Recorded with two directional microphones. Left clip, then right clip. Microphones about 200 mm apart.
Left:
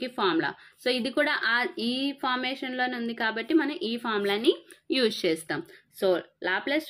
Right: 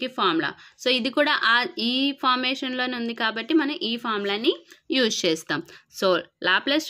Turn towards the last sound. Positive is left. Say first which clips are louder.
# right 6 dB
turn(degrees=-35)  # may be behind; listen again after turning